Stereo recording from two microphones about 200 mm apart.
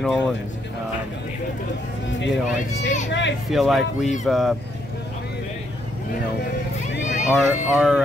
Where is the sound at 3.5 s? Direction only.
Centre (ahead or behind).